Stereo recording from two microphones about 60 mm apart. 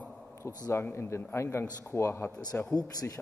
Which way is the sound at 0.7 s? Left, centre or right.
Left.